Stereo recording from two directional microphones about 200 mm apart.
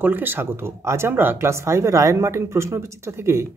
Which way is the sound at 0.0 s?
10° right (ahead or behind).